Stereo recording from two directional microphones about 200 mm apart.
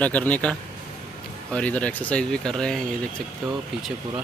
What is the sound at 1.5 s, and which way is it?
Speech, 5° left (ahead or behind).